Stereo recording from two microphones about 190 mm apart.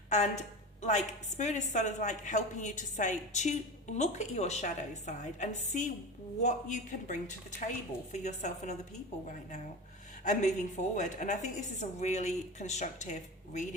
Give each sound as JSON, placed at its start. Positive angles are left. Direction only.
{"t": 0.1, "sound": "a woman's voice", "side_deg": 40}